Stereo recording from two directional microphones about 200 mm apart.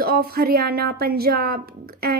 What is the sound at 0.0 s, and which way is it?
A woman's voice, 50° right (ahead or behind).